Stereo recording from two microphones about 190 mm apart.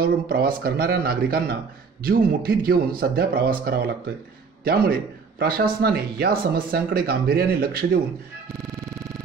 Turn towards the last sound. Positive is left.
turn(degrees=-50)  # may be behind; listen again after turning